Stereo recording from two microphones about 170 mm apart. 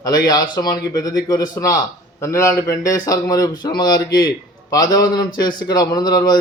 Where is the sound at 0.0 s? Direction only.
20° left (ahead or behind).